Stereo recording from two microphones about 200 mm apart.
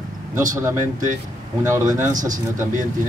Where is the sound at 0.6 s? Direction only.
15° right (ahead or behind).